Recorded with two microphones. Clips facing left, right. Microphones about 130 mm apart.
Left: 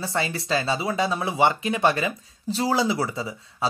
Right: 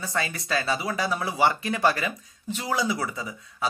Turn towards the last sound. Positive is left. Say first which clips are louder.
# left 4 dB
turn(degrees=25)  # may be behind; listen again after turning